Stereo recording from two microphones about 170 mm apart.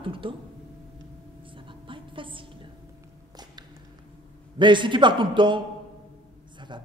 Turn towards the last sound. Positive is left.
turn(degrees=-30)  # may be behind; listen again after turning